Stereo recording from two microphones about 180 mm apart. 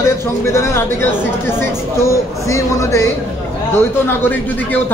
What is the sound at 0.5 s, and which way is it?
Speech, 15° left (ahead or behind).